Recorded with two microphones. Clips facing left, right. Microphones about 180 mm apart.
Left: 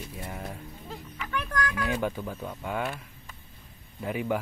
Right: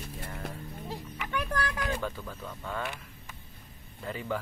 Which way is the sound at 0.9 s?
35° right (ahead or behind).